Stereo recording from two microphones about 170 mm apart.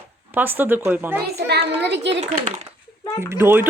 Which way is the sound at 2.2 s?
45° right (ahead or behind).